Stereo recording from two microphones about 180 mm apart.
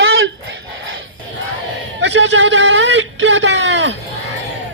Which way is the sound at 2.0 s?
90° right.